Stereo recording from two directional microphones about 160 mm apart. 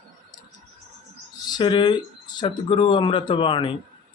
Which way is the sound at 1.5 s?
30° left (ahead or behind).